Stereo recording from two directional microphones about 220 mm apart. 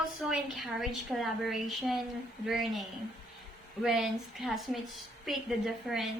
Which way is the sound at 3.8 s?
Centre (ahead or behind).